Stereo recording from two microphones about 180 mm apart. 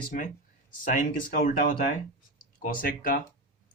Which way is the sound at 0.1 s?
50° left (ahead or behind).